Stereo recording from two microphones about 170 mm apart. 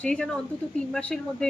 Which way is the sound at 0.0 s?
5° left (ahead or behind).